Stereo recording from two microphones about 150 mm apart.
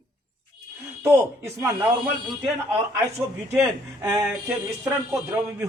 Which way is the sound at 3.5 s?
20° right (ahead or behind).